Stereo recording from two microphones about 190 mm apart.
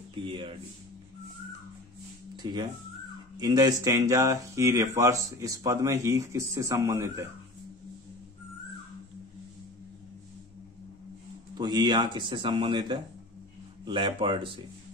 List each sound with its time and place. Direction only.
0.1 s speech: 25° right (ahead or behind)
2.3 s speech: 20° right (ahead or behind)
11.5 s speech: 25° right (ahead or behind)